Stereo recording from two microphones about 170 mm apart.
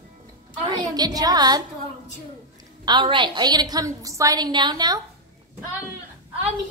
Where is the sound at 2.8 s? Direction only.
25° right (ahead or behind).